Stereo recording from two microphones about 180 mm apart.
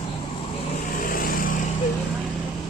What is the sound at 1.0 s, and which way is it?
Vehicle, 50° left (ahead or behind).